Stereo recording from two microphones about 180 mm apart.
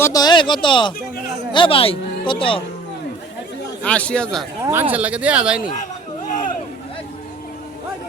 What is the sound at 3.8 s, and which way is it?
Speech, 5° left (ahead or behind).